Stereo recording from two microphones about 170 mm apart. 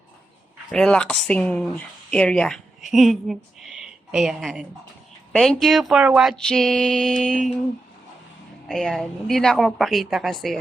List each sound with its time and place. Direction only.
0.7 s speech: 5° left (ahead or behind)
8.6 s speech: centre (ahead or behind)